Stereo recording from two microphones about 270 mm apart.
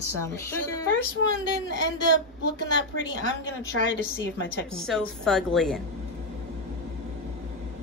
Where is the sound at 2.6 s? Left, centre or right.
Left.